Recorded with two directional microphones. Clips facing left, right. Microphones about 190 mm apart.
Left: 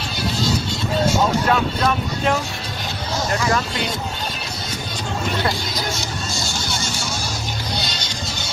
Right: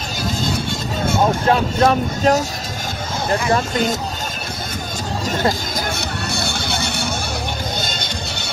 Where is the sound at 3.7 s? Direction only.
45° right (ahead or behind).